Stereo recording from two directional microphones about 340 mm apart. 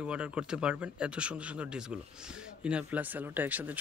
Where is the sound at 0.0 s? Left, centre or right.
Centre.